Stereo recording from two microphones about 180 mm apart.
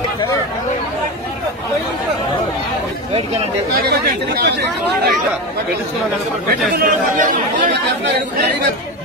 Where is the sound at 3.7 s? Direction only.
60° right (ahead or behind).